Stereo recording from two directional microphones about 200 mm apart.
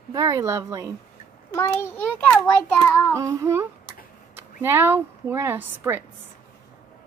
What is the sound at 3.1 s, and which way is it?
Speech, 15° right (ahead or behind).